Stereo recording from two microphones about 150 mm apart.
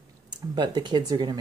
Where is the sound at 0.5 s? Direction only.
30° right (ahead or behind).